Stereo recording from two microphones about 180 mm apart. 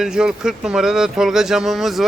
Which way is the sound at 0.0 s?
5° right (ahead or behind).